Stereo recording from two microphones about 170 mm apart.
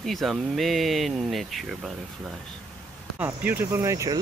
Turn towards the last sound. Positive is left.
turn(degrees=-20)  # may be behind; listen again after turning